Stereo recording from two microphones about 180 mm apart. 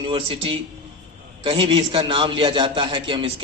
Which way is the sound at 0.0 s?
30° right (ahead or behind).